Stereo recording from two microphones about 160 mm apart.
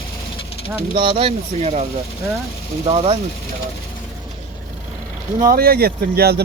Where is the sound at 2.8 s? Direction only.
35° right (ahead or behind).